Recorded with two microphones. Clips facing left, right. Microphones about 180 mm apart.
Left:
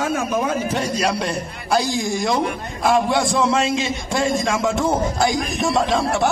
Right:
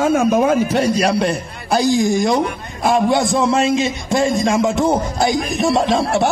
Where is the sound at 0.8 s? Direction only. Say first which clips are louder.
Right 5 dB; 65° right (ahead or behind).